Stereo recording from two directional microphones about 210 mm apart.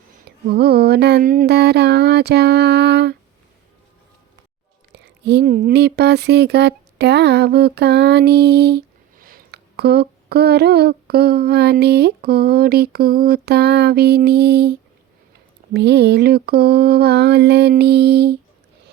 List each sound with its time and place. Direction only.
0.3 s speech: 50° right (ahead or behind)
5.0 s speech: 55° right (ahead or behind)